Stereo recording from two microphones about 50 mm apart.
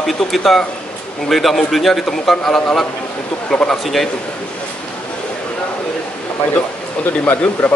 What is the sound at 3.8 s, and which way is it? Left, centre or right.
Speech, centre.